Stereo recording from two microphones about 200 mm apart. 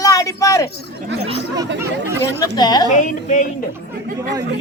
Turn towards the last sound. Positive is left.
turn(degrees=40)  # may be behind; listen again after turning